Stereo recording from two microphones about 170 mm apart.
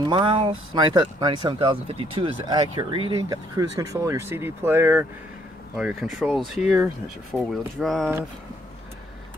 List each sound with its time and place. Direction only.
0.0 s speech: 30° right (ahead or behind); by 5.0 s 15° right (ahead or behind)
5.8 s speech: centre (ahead or behind)